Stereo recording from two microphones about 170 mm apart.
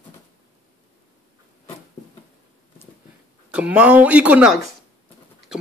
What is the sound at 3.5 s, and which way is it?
Speech, 5° right (ahead or behind).